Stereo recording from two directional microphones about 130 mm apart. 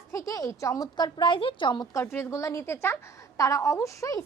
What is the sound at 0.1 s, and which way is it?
A woman's voice, 25° left (ahead or behind).